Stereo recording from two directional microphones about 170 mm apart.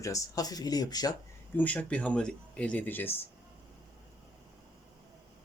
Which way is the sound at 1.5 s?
10° left (ahead or behind).